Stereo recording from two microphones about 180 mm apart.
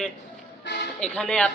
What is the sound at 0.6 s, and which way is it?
Speech, 75° left (ahead or behind).